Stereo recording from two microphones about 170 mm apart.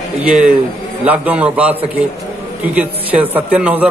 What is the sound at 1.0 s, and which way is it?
A man's voice, 10° right (ahead or behind).